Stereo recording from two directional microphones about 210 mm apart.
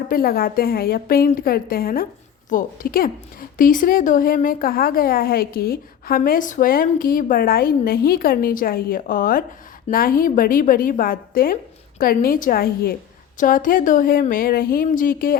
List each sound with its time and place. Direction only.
0.1 s a woman's voice: 45° left (ahead or behind)